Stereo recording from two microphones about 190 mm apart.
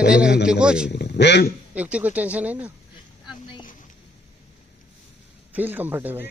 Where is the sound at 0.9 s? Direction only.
65° left (ahead or behind).